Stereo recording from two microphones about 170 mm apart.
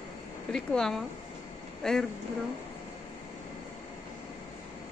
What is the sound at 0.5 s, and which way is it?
Speech, 5° left (ahead or behind).